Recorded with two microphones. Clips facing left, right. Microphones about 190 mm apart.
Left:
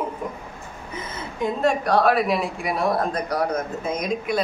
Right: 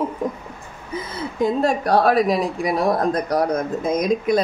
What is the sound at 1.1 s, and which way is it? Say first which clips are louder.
Speech: right 5 dB; 35° right (ahead or behind).